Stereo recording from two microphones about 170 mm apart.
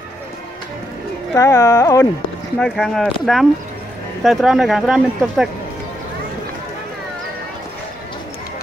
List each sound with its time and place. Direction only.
1.3 s speech: 20° left (ahead or behind)
2.6 s speech: centre (ahead or behind)